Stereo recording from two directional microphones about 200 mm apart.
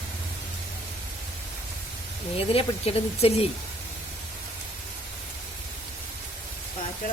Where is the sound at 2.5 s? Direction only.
30° left (ahead or behind).